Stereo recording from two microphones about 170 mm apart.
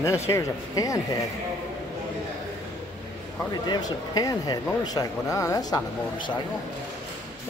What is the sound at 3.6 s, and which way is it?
Speech, 25° left (ahead or behind).